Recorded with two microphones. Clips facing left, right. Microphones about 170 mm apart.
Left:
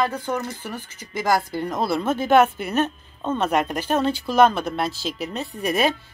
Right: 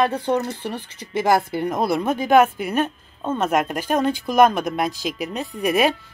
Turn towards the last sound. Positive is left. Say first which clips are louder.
# right 3 dB
turn(degrees=-10)  # may be behind; listen again after turning